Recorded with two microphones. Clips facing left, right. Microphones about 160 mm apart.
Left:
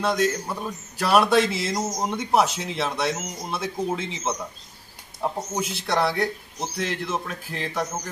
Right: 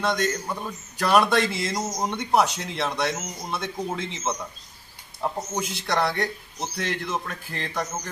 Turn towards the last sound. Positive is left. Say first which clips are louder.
# left 2 dB
turn(degrees=5)  # may be behind; listen again after turning